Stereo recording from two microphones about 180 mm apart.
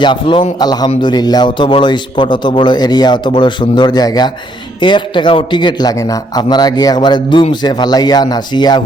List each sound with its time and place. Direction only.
0.0 s a man's voice: 25° left (ahead or behind)